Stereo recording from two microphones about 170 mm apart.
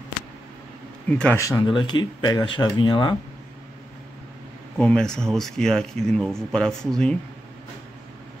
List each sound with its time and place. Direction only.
1.0 s speech: 5° left (ahead or behind)
1.4 s speech: 20° left (ahead or behind)
4.7 s speech: 5° left (ahead or behind)